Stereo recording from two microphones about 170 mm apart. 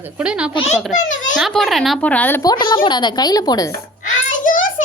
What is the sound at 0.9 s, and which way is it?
Speech, 50° left (ahead or behind).